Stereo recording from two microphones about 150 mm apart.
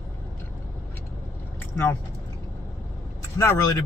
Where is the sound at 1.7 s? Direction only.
10° left (ahead or behind).